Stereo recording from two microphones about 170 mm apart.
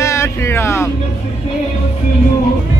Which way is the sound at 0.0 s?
15° left (ahead or behind).